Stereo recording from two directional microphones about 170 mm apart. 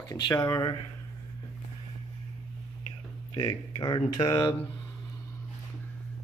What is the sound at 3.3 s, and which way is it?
Speech, 25° left (ahead or behind).